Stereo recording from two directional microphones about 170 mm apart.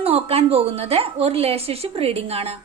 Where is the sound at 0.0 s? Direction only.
35° right (ahead or behind).